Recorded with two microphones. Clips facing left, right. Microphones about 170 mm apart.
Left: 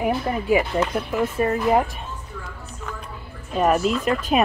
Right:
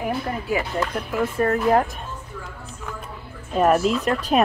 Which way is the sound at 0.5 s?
20° left (ahead or behind).